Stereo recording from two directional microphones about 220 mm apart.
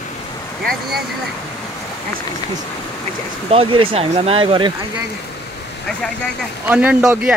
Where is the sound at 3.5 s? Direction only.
25° right (ahead or behind).